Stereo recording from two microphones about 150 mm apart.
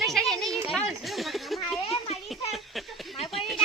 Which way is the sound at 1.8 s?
40° left (ahead or behind).